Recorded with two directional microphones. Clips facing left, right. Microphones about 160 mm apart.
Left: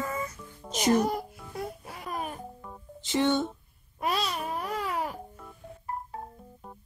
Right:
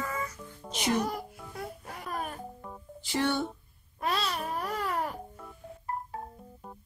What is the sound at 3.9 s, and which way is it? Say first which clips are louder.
Babbling: left 1 dB; 20° left (ahead or behind).